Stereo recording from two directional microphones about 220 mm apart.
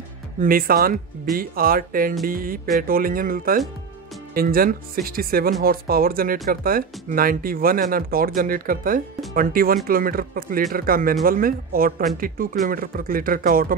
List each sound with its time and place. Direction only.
0.4 s speech: 40° right (ahead or behind)